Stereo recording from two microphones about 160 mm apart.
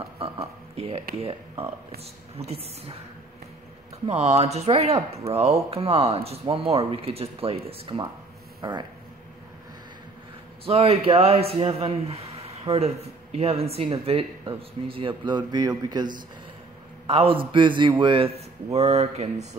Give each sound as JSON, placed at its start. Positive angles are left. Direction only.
{"t": 0.2, "sound": "a sound", "side_deg": -40}
{"t": 2.3, "sound": "speech", "side_deg": -40}
{"t": 4.1, "sound": "speech", "side_deg": -40}
{"t": 10.6, "sound": "speech", "side_deg": -40}